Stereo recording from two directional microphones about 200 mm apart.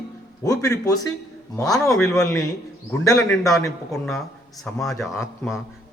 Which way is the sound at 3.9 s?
Centre (ahead or behind).